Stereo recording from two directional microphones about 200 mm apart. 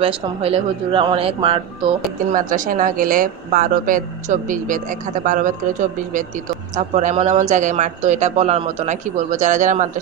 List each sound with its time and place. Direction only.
0.0 s speech: 30° right (ahead or behind)
2.3 s speech: 40° right (ahead or behind)